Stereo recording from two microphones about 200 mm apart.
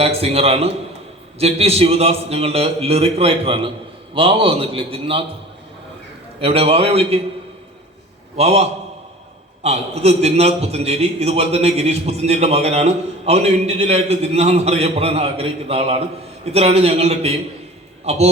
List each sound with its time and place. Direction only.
0.0 s a man's voice: 30° right (ahead or behind)
6.4 s a man's voice: 30° right (ahead or behind)
8.4 s a man's voice: 30° right (ahead or behind)
9.6 s a man's voice: 30° right (ahead or behind)